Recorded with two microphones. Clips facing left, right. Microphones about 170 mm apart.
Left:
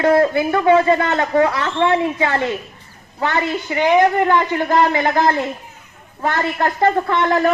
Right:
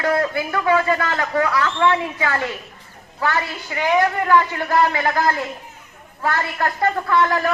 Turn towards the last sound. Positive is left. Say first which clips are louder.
# left 2 dB
turn(degrees=25)  # may be behind; listen again after turning